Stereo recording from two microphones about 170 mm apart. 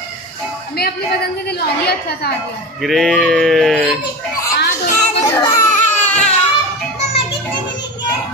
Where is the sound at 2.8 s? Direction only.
Centre (ahead or behind).